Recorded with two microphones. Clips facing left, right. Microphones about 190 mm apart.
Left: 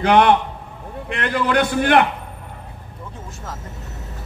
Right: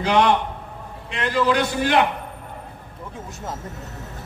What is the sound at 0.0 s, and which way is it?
A man's voice, 60° left (ahead or behind).